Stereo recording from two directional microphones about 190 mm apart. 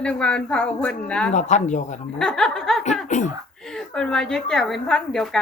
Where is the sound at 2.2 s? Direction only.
5° left (ahead or behind).